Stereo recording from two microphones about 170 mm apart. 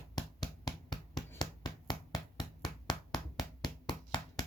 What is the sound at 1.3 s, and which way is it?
Hammer, 25° left (ahead or behind).